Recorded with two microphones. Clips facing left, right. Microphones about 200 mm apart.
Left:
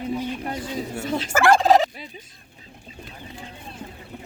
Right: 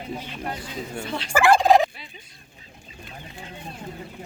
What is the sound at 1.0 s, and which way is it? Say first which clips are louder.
Fowl: left 5 dB; 45° left (ahead or behind).